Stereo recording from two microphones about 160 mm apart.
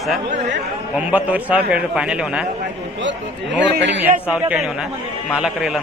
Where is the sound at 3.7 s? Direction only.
90° right.